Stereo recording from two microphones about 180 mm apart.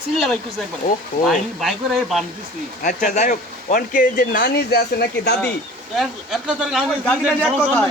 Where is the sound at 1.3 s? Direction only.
Centre (ahead or behind).